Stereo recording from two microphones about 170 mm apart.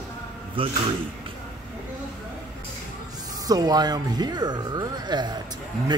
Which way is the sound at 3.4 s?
25° right (ahead or behind).